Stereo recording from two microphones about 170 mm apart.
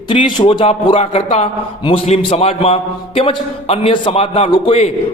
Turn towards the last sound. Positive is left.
turn(degrees=35)  # may be behind; listen again after turning